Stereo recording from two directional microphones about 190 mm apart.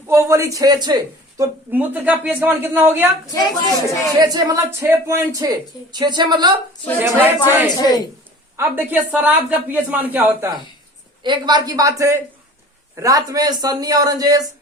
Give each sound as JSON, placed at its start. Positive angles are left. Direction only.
{"t": 0.1, "sound": "a woman's voice", "side_deg": -15}
{"t": 1.4, "sound": "a woman's voice", "side_deg": -10}
{"t": 4.2, "sound": "speech", "side_deg": -20}
{"t": 7.0, "sound": "a woman's voice", "side_deg": -10}
{"t": 7.8, "sound": "a man's voice", "side_deg": 20}
{"t": 8.5, "sound": "a woman's voice", "side_deg": -10}
{"t": 11.2, "sound": "speech", "side_deg": -25}